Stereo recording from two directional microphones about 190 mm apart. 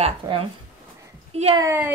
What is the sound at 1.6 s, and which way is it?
Speech, 10° right (ahead or behind).